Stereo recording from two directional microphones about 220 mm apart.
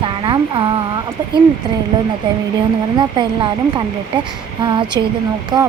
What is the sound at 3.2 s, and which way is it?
Speech, 20° right (ahead or behind).